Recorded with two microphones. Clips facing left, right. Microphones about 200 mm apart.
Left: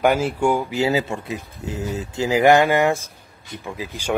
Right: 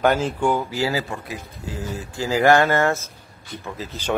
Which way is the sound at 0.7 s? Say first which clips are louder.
Left 4 dB; 20° left (ahead or behind).